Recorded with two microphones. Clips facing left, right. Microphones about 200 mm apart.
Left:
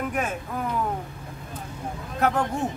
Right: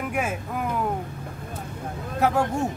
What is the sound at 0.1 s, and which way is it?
Speech, 10° right (ahead or behind).